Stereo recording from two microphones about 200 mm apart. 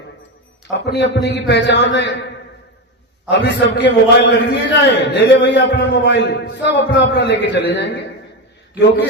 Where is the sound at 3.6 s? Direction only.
55° left (ahead or behind).